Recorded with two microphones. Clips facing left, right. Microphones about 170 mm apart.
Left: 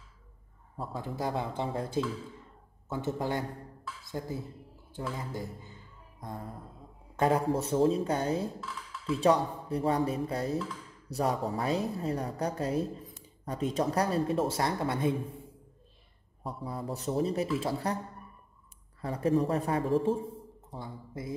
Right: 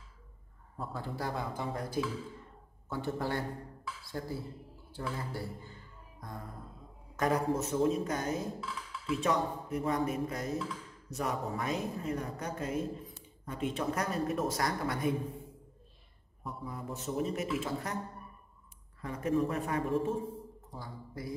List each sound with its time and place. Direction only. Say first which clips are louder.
0.9 s speech: left 4 dB; 20° left (ahead or behind)
7.2 s a man's voice: left 3 dB; 25° left (ahead or behind)
8.5 s music: even; centre (ahead or behind)
9.1 s a woman's voice: left 5 dB; 35° left (ahead or behind)
16.4 s a woman's voice: left 4 dB; 35° left (ahead or behind)
18.9 s a woman's voice: left 3 dB; 35° left (ahead or behind)